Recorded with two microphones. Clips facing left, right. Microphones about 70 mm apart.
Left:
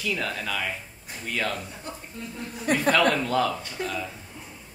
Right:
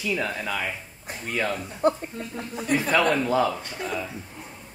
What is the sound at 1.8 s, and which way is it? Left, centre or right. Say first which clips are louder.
Speech: right 16 dB; right.